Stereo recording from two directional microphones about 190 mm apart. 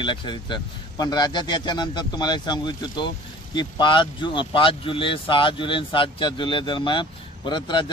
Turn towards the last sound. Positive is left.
turn(degrees=25)  # may be behind; listen again after turning